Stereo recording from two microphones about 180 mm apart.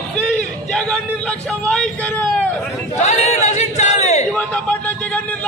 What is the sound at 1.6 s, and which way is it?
Vehicle, 5° left (ahead or behind).